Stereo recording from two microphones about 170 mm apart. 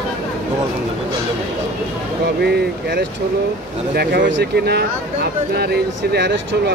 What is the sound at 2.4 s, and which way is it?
Speech, 70° right (ahead or behind).